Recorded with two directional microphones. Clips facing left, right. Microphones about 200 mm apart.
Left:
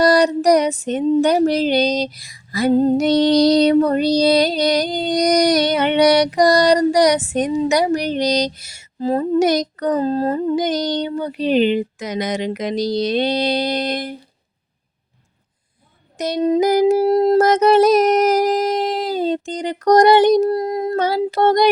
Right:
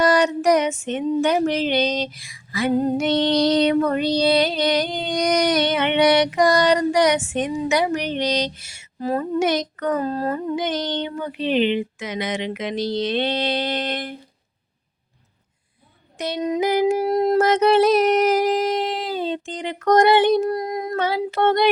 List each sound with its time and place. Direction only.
0.0 s female singing: 35° left (ahead or behind)
16.1 s female singing: 40° left (ahead or behind)
17.4 s female singing: 40° left (ahead or behind)
20.5 s child singing: 30° left (ahead or behind)
21.0 s female singing: 40° left (ahead or behind)